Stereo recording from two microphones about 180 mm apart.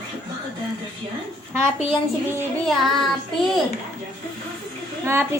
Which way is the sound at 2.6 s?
Centre (ahead or behind).